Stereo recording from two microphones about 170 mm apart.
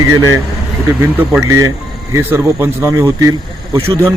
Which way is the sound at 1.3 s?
15° right (ahead or behind).